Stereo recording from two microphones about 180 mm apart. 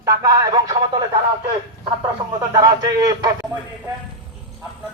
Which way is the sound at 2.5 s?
20° right (ahead or behind).